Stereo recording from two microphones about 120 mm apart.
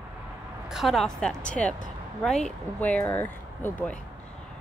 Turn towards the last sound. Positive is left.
turn(degrees=15)  # may be behind; listen again after turning